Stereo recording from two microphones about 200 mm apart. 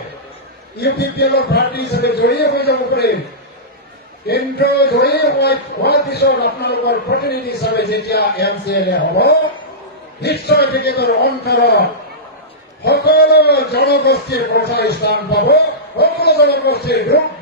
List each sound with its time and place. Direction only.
0.7 s a man's voice: 55° left (ahead or behind)
4.3 s a man's voice: 55° left (ahead or behind)